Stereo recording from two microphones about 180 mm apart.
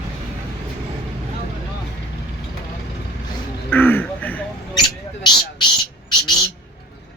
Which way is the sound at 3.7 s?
10° left (ahead or behind).